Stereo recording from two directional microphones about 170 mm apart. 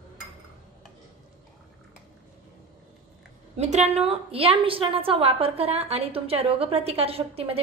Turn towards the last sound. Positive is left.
turn(degrees=-35)  # may be behind; listen again after turning